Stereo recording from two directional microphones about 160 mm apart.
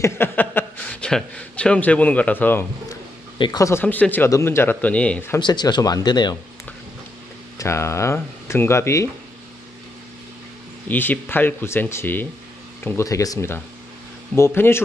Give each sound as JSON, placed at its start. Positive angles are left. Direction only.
{"t": 0.0, "sound": "a man's voice", "side_deg": 15}
{"t": 2.9, "sound": "speech", "side_deg": 25}
{"t": 5.4, "sound": "speech", "side_deg": 25}
{"t": 7.5, "sound": "speech", "side_deg": 15}
{"t": 10.9, "sound": "speech", "side_deg": 10}